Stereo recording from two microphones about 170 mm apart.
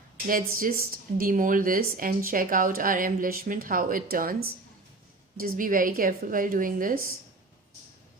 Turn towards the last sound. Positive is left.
turn(degrees=-55)  # may be behind; listen again after turning